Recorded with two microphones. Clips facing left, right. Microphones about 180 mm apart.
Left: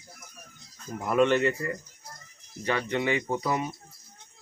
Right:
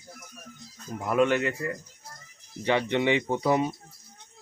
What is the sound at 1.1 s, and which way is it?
Speech, 5° right (ahead or behind).